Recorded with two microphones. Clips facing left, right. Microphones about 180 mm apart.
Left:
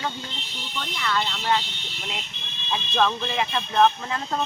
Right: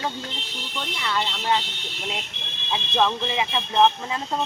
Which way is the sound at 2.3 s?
90° right.